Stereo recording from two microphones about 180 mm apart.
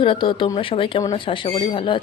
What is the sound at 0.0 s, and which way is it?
Speech, 30° left (ahead or behind).